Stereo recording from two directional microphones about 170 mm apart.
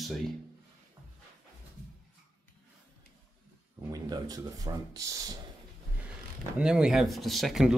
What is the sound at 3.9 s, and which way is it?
Speech, 20° right (ahead or behind).